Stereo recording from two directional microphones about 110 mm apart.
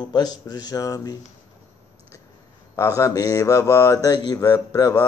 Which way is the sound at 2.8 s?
30° left (ahead or behind).